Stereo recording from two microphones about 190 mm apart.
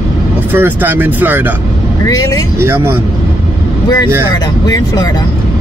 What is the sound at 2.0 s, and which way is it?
Speech, 20° left (ahead or behind).